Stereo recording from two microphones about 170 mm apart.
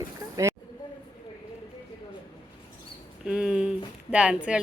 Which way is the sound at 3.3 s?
5° right (ahead or behind).